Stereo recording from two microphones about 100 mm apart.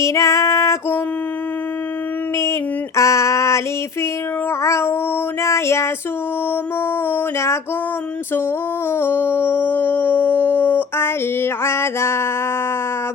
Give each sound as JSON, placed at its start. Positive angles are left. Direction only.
{"t": 0.0, "sound": "female singing", "side_deg": 30}
{"t": 2.4, "sound": "female singing", "side_deg": 30}
{"t": 4.6, "sound": "female singing", "side_deg": 25}
{"t": 8.9, "sound": "a sound", "side_deg": 20}